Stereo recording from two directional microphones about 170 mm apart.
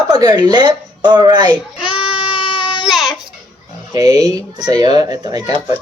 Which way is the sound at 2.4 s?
30° left (ahead or behind).